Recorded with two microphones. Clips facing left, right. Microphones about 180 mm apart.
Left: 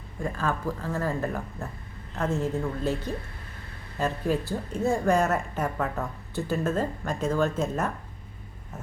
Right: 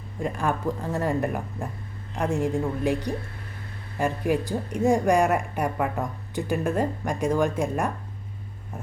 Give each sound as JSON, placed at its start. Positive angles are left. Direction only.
{"t": 0.2, "sound": "a woman's voice", "side_deg": -20}